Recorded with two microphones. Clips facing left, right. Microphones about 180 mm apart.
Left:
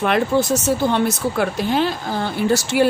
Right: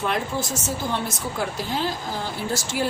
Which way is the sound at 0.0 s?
70° left (ahead or behind).